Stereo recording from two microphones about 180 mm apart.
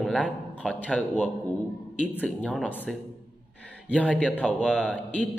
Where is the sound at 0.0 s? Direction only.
5° left (ahead or behind).